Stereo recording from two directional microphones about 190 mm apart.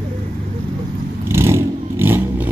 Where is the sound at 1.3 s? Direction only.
15° right (ahead or behind).